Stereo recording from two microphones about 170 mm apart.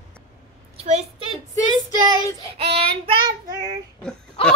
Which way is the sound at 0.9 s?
40° right (ahead or behind).